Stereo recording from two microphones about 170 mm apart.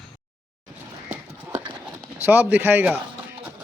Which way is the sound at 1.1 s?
10° right (ahead or behind).